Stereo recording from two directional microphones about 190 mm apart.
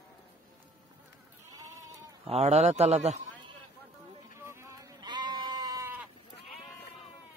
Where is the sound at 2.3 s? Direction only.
35° right (ahead or behind).